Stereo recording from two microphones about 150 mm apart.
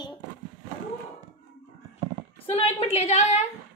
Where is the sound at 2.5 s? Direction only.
45° left (ahead or behind).